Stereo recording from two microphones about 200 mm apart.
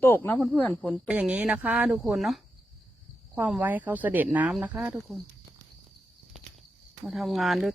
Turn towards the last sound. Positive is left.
turn(degrees=0)  # may be behind; listen again after turning